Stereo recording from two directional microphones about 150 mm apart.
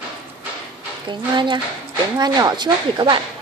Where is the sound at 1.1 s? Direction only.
30° right (ahead or behind).